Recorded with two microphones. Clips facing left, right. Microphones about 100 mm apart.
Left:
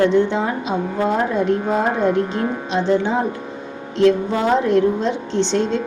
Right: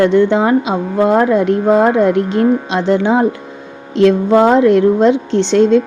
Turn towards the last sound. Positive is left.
turn(degrees=-70)  # may be behind; listen again after turning